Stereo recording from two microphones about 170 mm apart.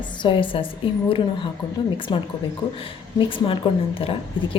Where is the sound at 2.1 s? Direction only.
30° left (ahead or behind).